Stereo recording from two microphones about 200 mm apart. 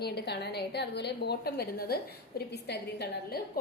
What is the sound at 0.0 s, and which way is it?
A woman's voice, 55° left (ahead or behind).